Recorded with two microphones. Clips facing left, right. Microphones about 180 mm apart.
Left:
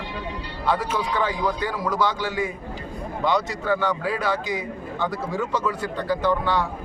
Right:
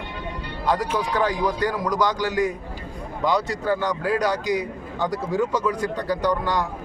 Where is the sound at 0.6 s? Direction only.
10° right (ahead or behind).